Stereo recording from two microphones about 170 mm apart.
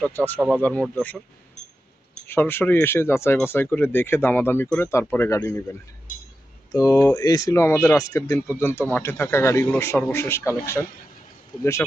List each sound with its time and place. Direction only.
0.0 s speech: 10° left (ahead or behind)
2.2 s speech: 10° left (ahead or behind)
6.1 s chink: 50° left (ahead or behind)
6.7 s speech: 20° left (ahead or behind)
7.2 s speech: 25° left (ahead or behind)